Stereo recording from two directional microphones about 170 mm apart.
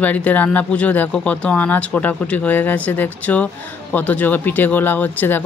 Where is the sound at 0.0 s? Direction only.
10° left (ahead or behind).